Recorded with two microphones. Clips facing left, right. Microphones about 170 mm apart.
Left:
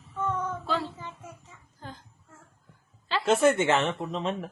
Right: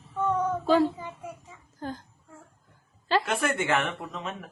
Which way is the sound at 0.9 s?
10° right (ahead or behind).